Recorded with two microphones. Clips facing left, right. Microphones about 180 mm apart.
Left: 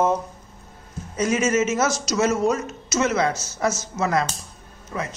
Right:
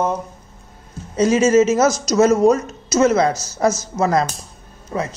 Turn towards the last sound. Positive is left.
turn(degrees=-30)  # may be behind; listen again after turning